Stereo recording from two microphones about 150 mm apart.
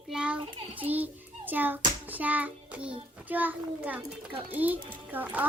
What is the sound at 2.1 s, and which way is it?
Child singing, 10° right (ahead or behind).